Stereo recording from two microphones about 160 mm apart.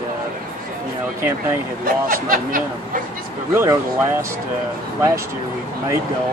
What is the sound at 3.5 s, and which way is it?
Speech, 15° right (ahead or behind).